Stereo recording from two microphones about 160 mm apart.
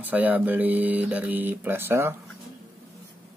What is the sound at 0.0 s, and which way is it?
Speech, 10° right (ahead or behind).